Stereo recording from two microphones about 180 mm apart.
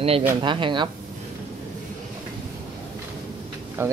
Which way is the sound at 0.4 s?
25° right (ahead or behind).